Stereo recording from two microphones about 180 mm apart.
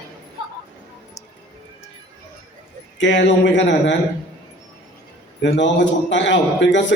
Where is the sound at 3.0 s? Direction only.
80° left.